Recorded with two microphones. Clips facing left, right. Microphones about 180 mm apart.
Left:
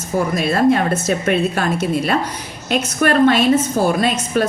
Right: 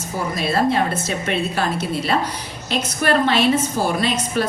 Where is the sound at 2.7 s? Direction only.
50° left (ahead or behind).